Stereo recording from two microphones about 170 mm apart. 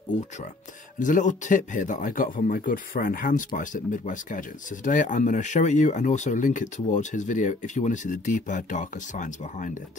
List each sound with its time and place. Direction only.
0.9 s speech: 50° left (ahead or behind)